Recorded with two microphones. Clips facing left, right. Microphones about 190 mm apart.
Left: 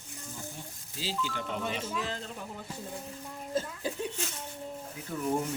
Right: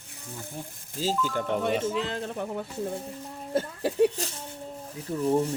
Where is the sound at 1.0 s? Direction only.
45° right (ahead or behind); by 4.1 s 70° right (ahead or behind).